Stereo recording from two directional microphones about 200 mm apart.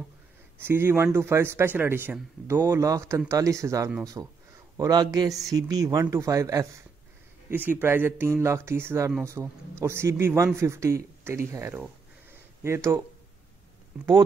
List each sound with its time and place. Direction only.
0.6 s speech: 10° right (ahead or behind)